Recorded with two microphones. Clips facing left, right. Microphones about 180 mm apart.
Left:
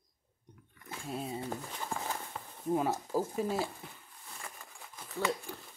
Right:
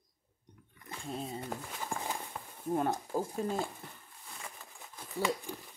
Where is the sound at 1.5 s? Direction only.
15° right (ahead or behind).